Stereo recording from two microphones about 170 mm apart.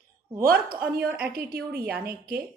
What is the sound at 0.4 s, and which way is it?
Speech, 60° right (ahead or behind).